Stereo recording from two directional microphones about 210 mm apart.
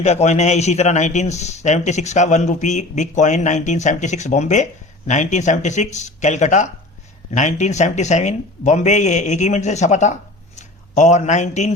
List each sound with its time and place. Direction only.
0.0 s a man's voice: 30° left (ahead or behind)